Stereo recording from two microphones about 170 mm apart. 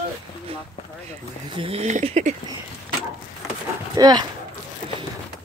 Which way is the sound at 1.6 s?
35° right (ahead or behind).